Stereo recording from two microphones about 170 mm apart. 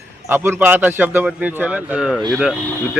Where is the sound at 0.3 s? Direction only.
15° right (ahead or behind).